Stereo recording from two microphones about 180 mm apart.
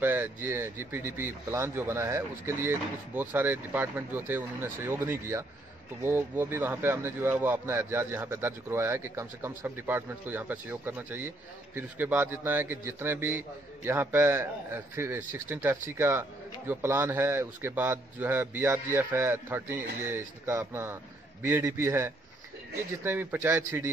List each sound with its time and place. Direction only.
0.0 s a man's voice: 10° right (ahead or behind)